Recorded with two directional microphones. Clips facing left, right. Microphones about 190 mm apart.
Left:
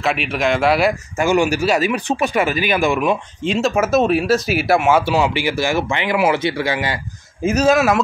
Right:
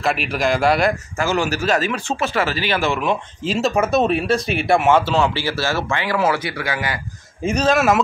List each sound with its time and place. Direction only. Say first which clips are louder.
0.0 s speech: left 1 dB; centre (ahead or behind)
1.1 s speech: left 4 dB; 15° left (ahead or behind)
3.4 s speech: left 1 dB; centre (ahead or behind)
5.0 s speech: left 2 dB; 15° left (ahead or behind)
7.4 s speech: left 2 dB; 5° left (ahead or behind)